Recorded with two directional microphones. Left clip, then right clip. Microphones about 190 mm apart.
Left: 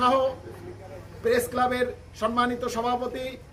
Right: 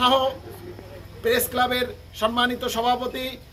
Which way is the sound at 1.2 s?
5° right (ahead or behind).